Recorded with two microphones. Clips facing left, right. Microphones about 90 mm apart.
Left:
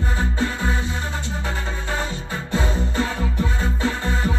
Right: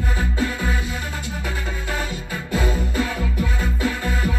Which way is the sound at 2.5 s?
30° left (ahead or behind).